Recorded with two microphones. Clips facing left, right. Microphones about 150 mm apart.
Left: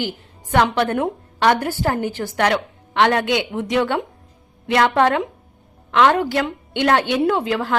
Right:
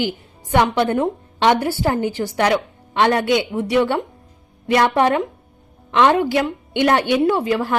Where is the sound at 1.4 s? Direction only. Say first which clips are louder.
Right 1 dB; 15° right (ahead or behind).